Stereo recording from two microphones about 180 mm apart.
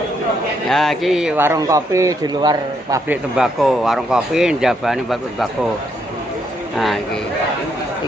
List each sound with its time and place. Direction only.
0.7 s a man's voice: centre (ahead or behind); by 3.0 s 20° right (ahead or behind)
3.1 s speech: 5° right (ahead or behind)
6.7 s speech: centre (ahead or behind)